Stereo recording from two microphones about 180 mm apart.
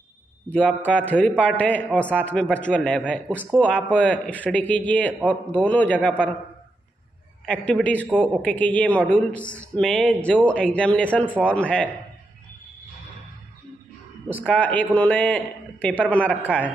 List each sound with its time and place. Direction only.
0.5 s speech: 5° left (ahead or behind)
7.4 s speech: 5° left (ahead or behind)
8.1 s speech: 5° right (ahead or behind)
8.4 s speech: 10° left (ahead or behind)
14.4 s speech: 10° left (ahead or behind)